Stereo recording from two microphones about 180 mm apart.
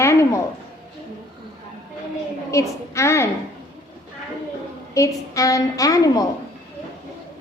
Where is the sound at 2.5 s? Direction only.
15° left (ahead or behind).